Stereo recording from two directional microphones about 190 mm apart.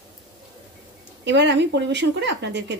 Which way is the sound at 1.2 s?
65° right (ahead or behind).